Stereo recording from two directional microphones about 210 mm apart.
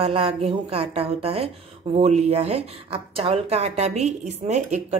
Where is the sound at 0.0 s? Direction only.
25° right (ahead or behind).